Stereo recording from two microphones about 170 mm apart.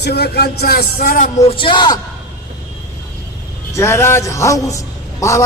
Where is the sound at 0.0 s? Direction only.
70° left (ahead or behind).